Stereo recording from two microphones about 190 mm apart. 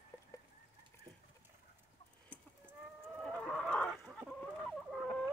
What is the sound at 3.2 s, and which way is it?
Chicken, centre (ahead or behind).